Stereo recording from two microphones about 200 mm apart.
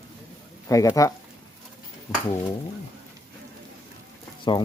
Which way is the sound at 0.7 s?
15° left (ahead or behind).